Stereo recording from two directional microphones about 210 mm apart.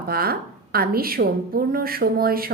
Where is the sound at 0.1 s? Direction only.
45° right (ahead or behind).